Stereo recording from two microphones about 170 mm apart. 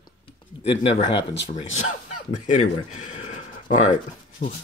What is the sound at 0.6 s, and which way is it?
Speech, 35° left (ahead or behind).